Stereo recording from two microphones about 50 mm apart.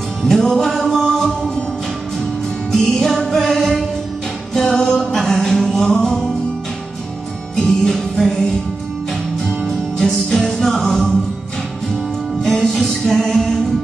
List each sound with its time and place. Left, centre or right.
0.2 s music: centre
2.7 s music: centre
7.5 s music: centre
9.7 s music: centre
12.4 s music: centre